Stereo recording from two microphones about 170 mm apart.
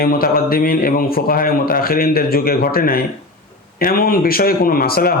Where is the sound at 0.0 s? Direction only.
60° left (ahead or behind).